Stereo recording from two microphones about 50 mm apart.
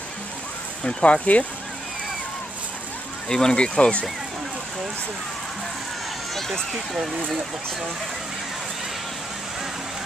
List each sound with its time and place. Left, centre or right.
0.8 s speech: left
3.3 s speech: centre
6.3 s run: centre
6.9 s speech: centre